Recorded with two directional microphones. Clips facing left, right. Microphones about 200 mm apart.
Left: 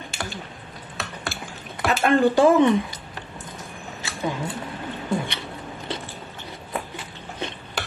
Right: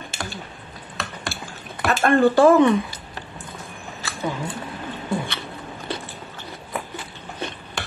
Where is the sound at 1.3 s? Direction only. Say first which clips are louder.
Even; 20° left (ahead or behind).